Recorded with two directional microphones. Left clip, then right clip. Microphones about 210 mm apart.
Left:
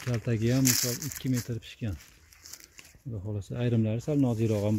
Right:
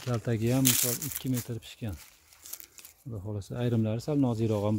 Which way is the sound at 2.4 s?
40° right (ahead or behind).